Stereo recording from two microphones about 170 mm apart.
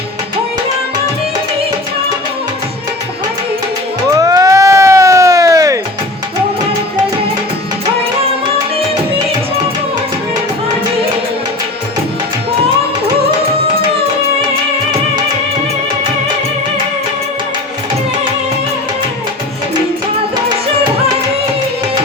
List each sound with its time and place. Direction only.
4.1 s crowd: 20° right (ahead or behind)